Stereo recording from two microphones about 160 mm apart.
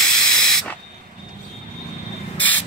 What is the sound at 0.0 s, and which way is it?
Owl, 5° left (ahead or behind).